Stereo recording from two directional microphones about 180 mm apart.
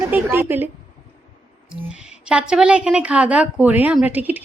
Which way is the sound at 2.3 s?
5° right (ahead or behind).